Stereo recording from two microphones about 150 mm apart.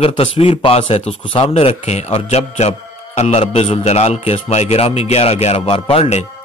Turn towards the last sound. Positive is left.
turn(degrees=40)  # may be behind; listen again after turning